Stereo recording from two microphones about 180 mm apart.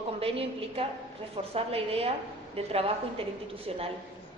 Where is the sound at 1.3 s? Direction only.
35° right (ahead or behind).